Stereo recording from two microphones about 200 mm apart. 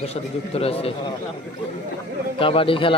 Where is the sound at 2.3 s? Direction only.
25° left (ahead or behind).